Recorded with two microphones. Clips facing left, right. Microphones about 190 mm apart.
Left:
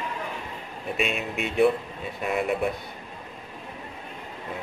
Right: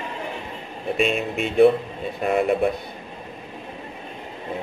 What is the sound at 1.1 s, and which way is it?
Speech, centre (ahead or behind).